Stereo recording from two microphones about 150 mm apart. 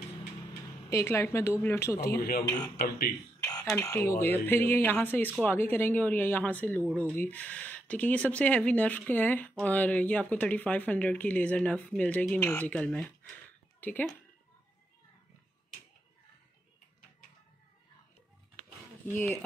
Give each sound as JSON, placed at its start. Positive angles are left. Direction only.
{"t": 0.8, "sound": "speech", "side_deg": 20}
{"t": 2.0, "sound": "speech", "side_deg": 85}
{"t": 3.7, "sound": "speech", "side_deg": 15}